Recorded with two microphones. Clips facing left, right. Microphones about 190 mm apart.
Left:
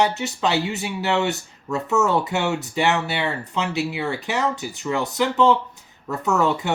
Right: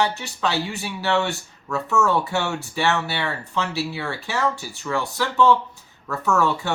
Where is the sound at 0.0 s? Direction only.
20° left (ahead or behind).